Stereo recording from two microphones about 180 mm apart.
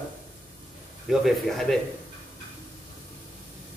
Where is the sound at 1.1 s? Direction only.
Centre (ahead or behind).